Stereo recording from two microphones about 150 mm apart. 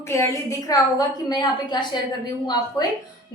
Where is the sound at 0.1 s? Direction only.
20° left (ahead or behind).